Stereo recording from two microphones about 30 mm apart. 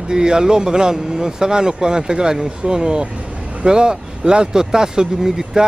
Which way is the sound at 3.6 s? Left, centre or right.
Right.